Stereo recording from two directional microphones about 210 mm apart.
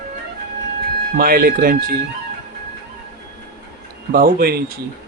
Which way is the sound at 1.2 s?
45° right (ahead or behind).